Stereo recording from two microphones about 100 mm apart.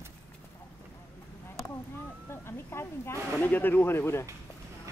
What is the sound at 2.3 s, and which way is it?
Speech, 25° left (ahead or behind).